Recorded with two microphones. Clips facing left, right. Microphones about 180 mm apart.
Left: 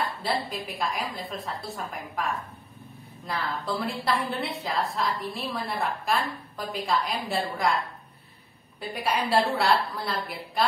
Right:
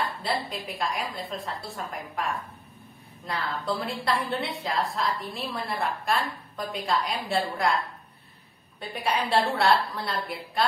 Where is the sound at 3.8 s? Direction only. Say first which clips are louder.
Left 1 dB; centre (ahead or behind).